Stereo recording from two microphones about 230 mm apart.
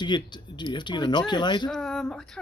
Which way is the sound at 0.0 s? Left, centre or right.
Centre.